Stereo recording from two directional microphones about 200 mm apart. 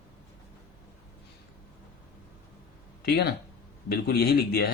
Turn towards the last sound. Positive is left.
turn(degrees=50)  # may be behind; listen again after turning